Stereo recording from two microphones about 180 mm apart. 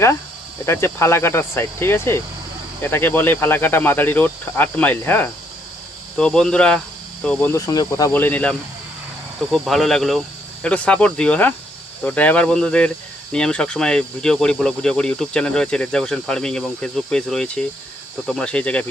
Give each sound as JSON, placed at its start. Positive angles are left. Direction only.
{"t": 0.6, "sound": "speech", "side_deg": 15}
{"t": 7.5, "sound": "speech", "side_deg": 20}
{"t": 8.1, "sound": "speech", "side_deg": 10}